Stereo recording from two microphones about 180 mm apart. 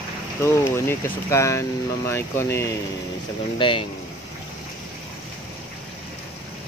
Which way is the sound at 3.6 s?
30° left (ahead or behind).